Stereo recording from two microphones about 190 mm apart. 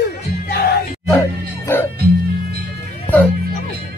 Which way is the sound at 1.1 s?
15° left (ahead or behind).